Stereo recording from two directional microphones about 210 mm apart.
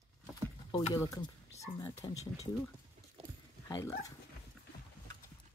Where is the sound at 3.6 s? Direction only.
15° left (ahead or behind).